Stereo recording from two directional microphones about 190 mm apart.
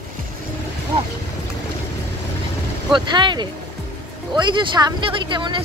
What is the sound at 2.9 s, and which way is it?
Speech, 25° right (ahead or behind).